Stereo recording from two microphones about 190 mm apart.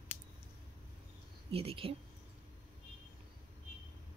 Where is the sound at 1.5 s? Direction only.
30° right (ahead or behind).